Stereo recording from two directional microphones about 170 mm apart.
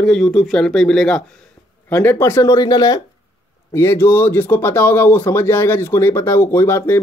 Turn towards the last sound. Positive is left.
turn(degrees=15)  # may be behind; listen again after turning